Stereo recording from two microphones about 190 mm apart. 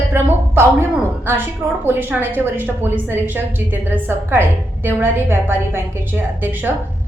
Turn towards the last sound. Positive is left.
turn(degrees=-10)  # may be behind; listen again after turning